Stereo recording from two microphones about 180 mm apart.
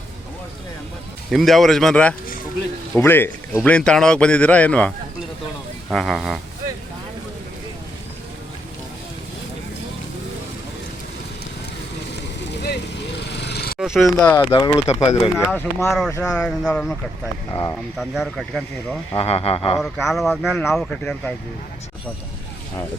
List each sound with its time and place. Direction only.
1.3 s speech: centre (ahead or behind)
12.6 s vehicle: 65° left (ahead or behind)
13.7 s speech: 5° right (ahead or behind)
14.5 s speech: 20° left (ahead or behind); by 16.9 s 5° left (ahead or behind)
17.5 s speech: 20° left (ahead or behind)
17.9 s speech: centre (ahead or behind)
19.1 s speech: 30° left (ahead or behind)
20.1 s speech: centre (ahead or behind)